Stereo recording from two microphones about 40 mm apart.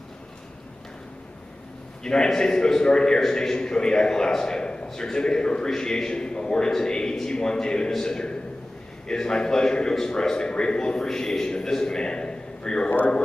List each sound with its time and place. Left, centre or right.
2.0 s a man's voice: centre